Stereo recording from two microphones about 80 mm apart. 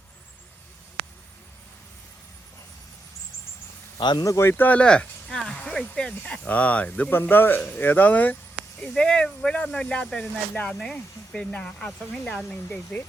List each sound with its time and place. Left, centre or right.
4.2 s speech: left
8.9 s speech: centre
12.6 s speech: centre